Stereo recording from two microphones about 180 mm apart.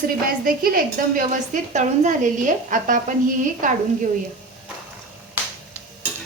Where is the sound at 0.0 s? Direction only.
55° right (ahead or behind).